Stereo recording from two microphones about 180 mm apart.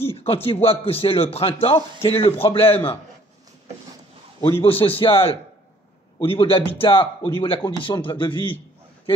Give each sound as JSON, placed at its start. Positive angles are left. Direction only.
{"t": 0.0, "sound": "a man's voice", "side_deg": 30}
{"t": 4.4, "sound": "a man's voice", "side_deg": 30}